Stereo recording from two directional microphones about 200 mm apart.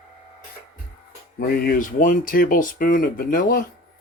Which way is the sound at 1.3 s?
50° left (ahead or behind).